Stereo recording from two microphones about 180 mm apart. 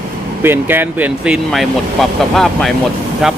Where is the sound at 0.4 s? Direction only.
10° right (ahead or behind).